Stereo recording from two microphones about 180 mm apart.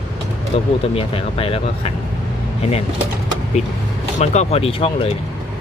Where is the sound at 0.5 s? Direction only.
30° left (ahead or behind).